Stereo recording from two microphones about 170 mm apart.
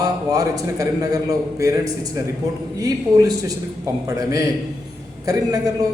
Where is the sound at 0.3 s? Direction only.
20° right (ahead or behind).